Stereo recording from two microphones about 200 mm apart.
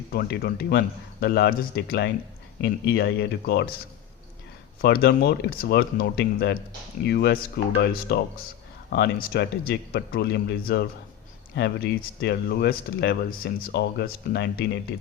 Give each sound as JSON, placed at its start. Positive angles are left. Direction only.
{"t": 0.1, "sound": "speech", "side_deg": 50}
{"t": 4.8, "sound": "speech", "side_deg": 50}